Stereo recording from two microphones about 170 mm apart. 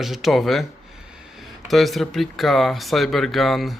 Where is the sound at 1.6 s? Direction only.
Centre (ahead or behind).